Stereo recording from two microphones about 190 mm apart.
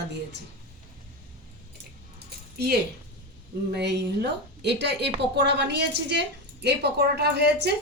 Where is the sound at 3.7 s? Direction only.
60° right (ahead or behind).